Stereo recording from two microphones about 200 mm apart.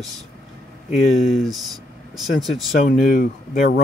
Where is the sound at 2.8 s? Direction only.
40° left (ahead or behind).